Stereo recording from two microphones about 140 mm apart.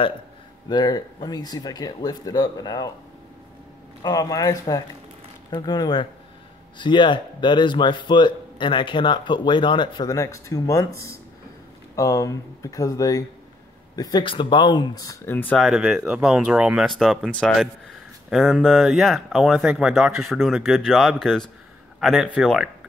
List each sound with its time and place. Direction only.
0.7 s speech: 30° left (ahead or behind)
4.0 s speech: 25° left (ahead or behind)
11.9 s speech: 25° left (ahead or behind)
15.2 s speech: 10° left (ahead or behind)
15.6 s speech: 5° right (ahead or behind)